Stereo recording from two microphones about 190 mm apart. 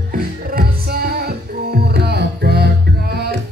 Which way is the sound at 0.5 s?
50° right (ahead or behind).